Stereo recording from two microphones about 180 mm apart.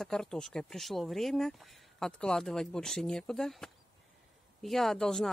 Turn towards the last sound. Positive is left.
turn(degrees=0)  # may be behind; listen again after turning